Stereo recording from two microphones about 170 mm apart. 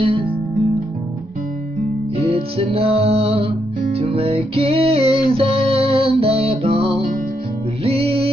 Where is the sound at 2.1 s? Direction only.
35° right (ahead or behind).